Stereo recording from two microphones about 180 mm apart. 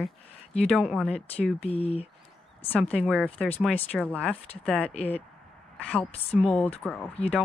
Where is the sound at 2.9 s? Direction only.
5° left (ahead or behind).